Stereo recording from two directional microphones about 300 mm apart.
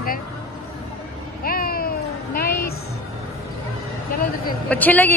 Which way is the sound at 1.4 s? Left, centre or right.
Left.